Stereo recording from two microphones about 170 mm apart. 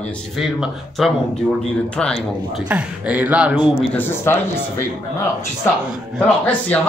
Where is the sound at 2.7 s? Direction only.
10° right (ahead or behind).